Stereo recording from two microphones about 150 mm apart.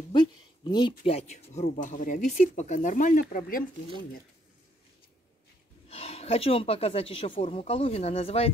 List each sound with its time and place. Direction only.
0.7 s speech: 30° left (ahead or behind); by 3.6 s 70° left (ahead or behind)
5.9 s speech: 40° left (ahead or behind)